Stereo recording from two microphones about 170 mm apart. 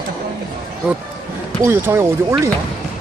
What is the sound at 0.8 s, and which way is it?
Speech, 5° right (ahead or behind).